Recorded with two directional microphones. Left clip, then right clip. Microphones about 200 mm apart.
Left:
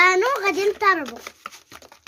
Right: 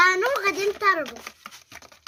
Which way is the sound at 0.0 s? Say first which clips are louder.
Left 2 dB; 35° left (ahead or behind).